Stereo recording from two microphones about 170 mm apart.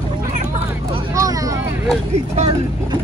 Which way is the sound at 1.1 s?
20° right (ahead or behind).